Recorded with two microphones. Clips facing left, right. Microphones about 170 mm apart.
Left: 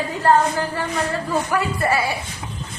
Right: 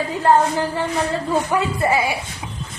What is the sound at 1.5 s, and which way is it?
Speech, 20° right (ahead or behind).